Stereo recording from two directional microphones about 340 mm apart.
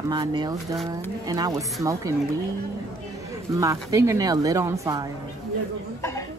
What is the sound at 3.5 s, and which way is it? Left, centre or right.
A man's voice, centre.